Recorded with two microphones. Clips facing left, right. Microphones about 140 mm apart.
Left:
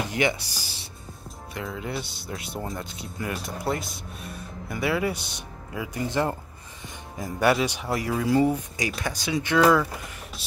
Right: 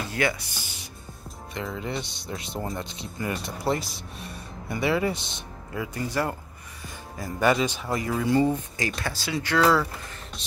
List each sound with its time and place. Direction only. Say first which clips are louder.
0.0 s a sound: left 2 dB; 20° left (ahead or behind)
0.4 s speech: even; 35° left (ahead or behind)
1.5 s speech: right 1 dB; 5° left (ahead or behind); by 9.7 s 20° left (ahead or behind)